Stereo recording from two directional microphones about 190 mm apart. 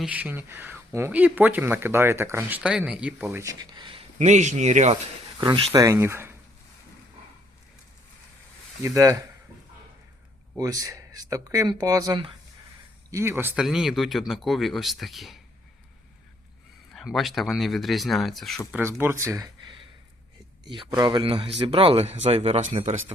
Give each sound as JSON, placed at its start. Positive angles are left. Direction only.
{"t": 0.0, "sound": "speech", "side_deg": -10}
{"t": 3.4, "sound": "speech", "side_deg": -20}
{"t": 4.2, "sound": "speech", "side_deg": -40}
{"t": 5.4, "sound": "speech", "side_deg": -25}
{"t": 8.8, "sound": "speech", "side_deg": -15}
{"t": 10.6, "sound": "speech", "side_deg": -15}
{"t": 16.9, "sound": "speech", "side_deg": 0}
{"t": 18.7, "sound": "speech", "side_deg": -10}